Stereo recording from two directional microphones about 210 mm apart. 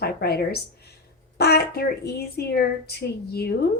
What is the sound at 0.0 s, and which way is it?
Speech, 50° left (ahead or behind).